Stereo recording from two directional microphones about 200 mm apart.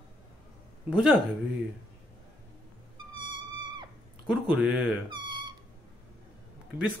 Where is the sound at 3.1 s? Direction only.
25° right (ahead or behind).